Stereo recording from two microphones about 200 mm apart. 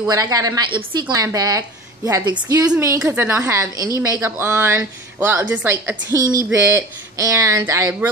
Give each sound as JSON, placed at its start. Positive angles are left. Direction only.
{"t": 0.1, "sound": "a woman's voice", "side_deg": -15}